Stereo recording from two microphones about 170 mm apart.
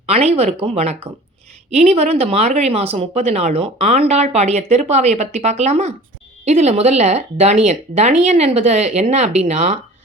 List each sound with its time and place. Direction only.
0.0 s speech: 35° right (ahead or behind)